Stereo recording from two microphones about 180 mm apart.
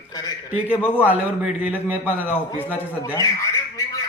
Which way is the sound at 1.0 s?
10° right (ahead or behind).